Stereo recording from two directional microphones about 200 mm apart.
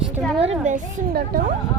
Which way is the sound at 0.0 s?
Centre (ahead or behind).